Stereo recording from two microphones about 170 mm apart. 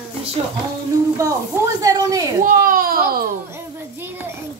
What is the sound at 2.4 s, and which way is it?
Baby cry, 55° right (ahead or behind).